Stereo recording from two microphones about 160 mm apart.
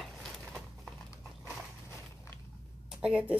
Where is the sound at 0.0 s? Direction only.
Centre (ahead or behind).